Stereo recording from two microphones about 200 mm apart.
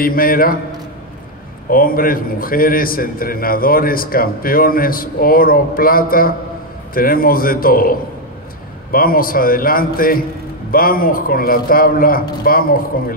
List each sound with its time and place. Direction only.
0.0 s a man's voice: 45° left (ahead or behind)
1.7 s a man's voice: 45° left (ahead or behind)